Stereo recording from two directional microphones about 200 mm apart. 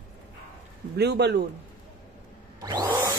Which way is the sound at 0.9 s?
55° right (ahead or behind).